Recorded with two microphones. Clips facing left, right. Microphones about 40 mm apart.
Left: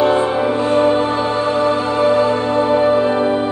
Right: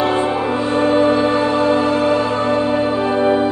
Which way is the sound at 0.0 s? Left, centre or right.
Right.